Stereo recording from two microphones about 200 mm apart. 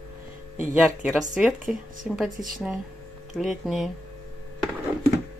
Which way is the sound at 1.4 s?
Centre (ahead or behind).